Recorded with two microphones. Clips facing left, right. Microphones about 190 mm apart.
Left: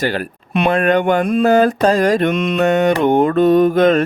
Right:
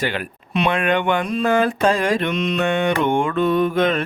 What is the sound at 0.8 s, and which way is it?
Mantra, 40° left (ahead or behind).